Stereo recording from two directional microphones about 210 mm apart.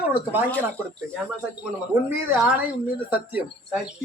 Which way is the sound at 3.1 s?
10° right (ahead or behind).